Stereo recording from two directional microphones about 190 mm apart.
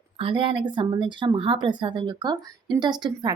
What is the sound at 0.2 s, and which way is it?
Speech, 25° right (ahead or behind).